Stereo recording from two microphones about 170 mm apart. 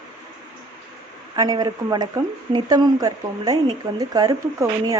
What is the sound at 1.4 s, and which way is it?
Speech, 25° right (ahead or behind).